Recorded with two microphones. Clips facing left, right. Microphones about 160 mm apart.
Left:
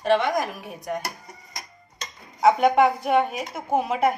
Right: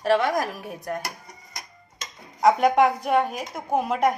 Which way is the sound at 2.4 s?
Centre (ahead or behind).